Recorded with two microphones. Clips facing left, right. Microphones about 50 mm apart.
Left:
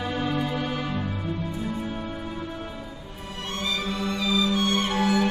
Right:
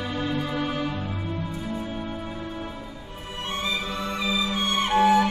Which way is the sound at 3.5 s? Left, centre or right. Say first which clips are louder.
Even; centre.